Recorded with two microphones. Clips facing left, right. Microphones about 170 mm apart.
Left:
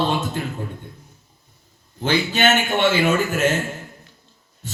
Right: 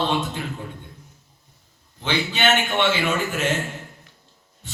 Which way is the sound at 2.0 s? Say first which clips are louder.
Left 4 dB; 45° left (ahead or behind).